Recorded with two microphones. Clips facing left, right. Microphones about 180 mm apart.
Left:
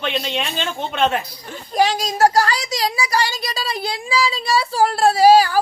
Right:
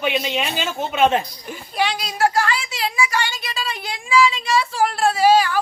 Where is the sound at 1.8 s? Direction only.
40° left (ahead or behind).